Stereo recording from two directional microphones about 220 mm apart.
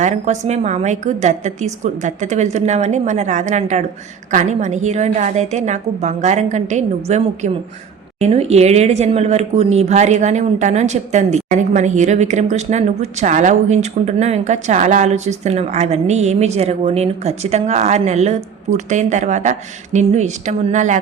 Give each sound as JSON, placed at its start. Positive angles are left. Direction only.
{"t": 0.0, "sound": "a woman's voice", "side_deg": -30}